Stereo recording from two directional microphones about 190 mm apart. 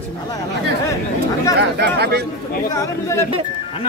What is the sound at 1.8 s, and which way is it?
Speech, 60° right (ahead or behind).